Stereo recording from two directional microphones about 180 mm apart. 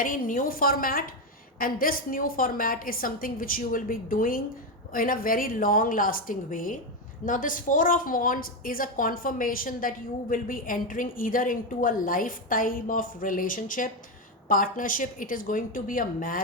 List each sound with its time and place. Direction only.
0.0 s a woman's voice: 50° left (ahead or behind)